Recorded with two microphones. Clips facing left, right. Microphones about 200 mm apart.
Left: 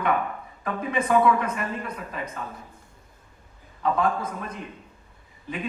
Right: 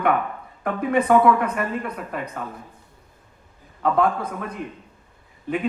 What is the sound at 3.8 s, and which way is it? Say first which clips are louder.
Speech: right 3 dB; 60° right (ahead or behind).